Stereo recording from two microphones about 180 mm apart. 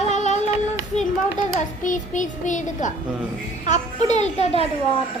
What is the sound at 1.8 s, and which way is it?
A child's voice, 45° left (ahead or behind).